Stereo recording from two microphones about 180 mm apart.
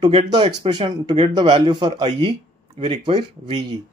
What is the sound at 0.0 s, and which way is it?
Speech, 25° right (ahead or behind).